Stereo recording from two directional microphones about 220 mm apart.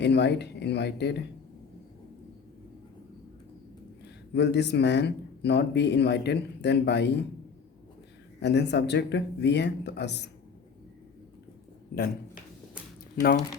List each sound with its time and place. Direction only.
0.0 s speech: 50° left (ahead or behind)
4.4 s speech: 50° left (ahead or behind)
8.4 s speech: 50° left (ahead or behind)